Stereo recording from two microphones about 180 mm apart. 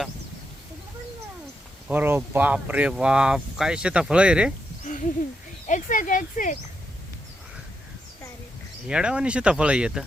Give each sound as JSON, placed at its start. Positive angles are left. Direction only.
{"t": 1.9, "sound": "speech", "side_deg": -10}
{"t": 5.6, "sound": "speech", "side_deg": 45}
{"t": 8.9, "sound": "speech", "side_deg": -5}